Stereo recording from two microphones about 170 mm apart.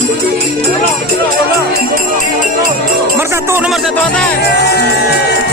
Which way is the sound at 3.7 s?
Centre (ahead or behind).